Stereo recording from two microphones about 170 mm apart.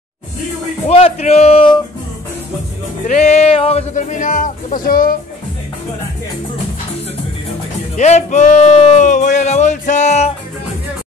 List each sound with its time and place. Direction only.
0.8 s speech: 35° left (ahead or behind)
3.1 s music: 40° left (ahead or behind)
3.9 s speech: 50° left (ahead or behind)
8.0 s speech: 45° left (ahead or behind)